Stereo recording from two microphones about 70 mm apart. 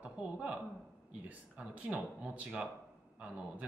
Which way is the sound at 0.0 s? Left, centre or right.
Centre.